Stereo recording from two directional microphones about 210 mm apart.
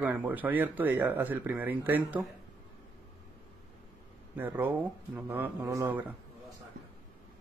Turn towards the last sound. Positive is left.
turn(degrees=-10)  # may be behind; listen again after turning